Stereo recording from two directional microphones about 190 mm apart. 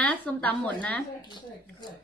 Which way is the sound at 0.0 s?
5° left (ahead or behind).